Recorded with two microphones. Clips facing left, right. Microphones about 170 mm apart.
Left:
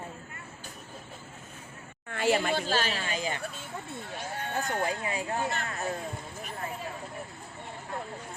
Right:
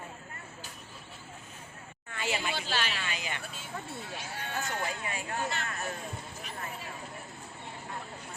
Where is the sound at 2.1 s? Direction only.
55° left (ahead or behind); by 3.4 s 40° left (ahead or behind).